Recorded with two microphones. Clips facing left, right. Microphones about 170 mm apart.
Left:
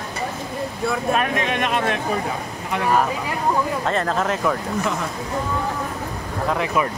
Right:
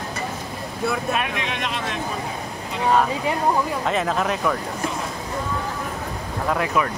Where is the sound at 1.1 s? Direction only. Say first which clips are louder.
Left 4 dB; 45° left (ahead or behind).